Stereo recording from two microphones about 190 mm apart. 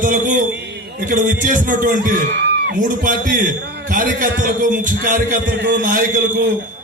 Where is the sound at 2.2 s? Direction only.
65° right (ahead or behind).